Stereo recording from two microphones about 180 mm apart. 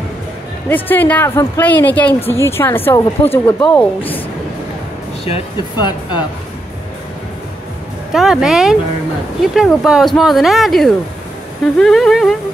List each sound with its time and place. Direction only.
0.7 s speech: 10° left (ahead or behind)
5.2 s speech: 30° left (ahead or behind)
8.1 s speech: centre (ahead or behind)